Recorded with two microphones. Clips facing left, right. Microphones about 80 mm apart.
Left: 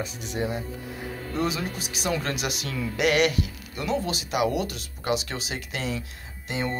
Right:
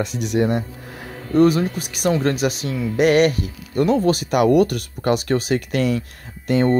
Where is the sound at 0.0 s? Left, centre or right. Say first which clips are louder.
Right 10 dB; right.